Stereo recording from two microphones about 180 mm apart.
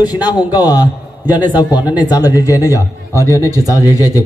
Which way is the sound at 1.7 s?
10° right (ahead or behind).